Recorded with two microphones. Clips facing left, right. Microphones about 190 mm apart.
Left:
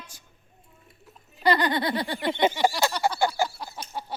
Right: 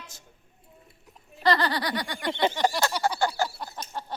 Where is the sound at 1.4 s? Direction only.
15° left (ahead or behind).